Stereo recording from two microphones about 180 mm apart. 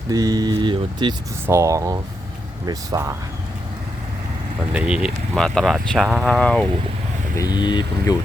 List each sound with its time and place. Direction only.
0.1 s speech: 20° right (ahead or behind)
4.7 s speech: 5° right (ahead or behind)
7.3 s speech: 20° left (ahead or behind)